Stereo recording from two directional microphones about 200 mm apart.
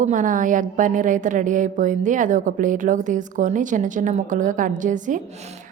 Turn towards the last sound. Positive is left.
turn(degrees=-40)  # may be behind; listen again after turning